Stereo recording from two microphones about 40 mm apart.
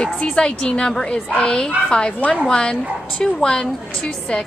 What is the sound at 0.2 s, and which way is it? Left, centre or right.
A woman's voice, left.